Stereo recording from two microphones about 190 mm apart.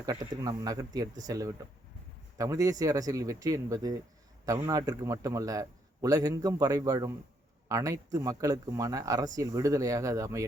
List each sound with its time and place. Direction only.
0.0 s speech: 20° right (ahead or behind)